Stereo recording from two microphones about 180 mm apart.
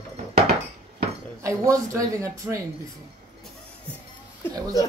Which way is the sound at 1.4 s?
15° right (ahead or behind).